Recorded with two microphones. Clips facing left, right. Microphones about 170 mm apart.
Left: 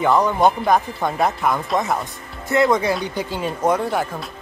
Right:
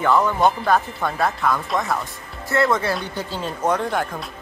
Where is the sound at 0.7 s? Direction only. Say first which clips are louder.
Left 2 dB; 15° left (ahead or behind).